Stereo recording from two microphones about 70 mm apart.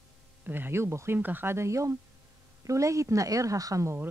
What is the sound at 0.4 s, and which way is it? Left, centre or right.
Speech, right.